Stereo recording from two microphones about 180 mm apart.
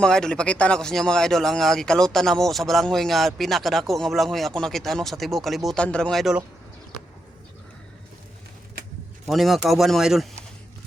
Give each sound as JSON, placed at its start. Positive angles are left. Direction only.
{"t": 0.0, "sound": "speech", "side_deg": 5}
{"t": 9.2, "sound": "speech", "side_deg": 0}